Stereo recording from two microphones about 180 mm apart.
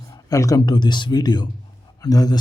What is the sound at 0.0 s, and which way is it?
A man's voice, 20° left (ahead or behind).